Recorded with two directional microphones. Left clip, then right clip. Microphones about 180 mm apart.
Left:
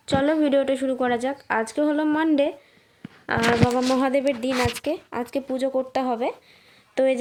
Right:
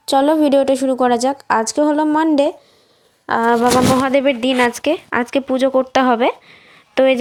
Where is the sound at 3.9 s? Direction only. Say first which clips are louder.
Right 7 dB; 10° right (ahead or behind).